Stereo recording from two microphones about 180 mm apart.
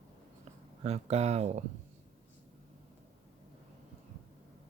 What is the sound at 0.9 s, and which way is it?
Speech, 35° right (ahead or behind).